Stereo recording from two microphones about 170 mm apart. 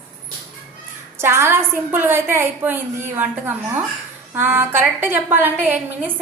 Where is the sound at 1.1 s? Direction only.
15° right (ahead or behind).